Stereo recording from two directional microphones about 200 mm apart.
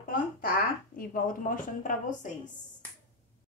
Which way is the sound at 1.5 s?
40° left (ahead or behind).